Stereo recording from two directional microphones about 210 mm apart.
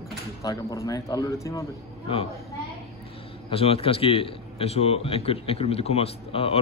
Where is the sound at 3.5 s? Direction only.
25° left (ahead or behind).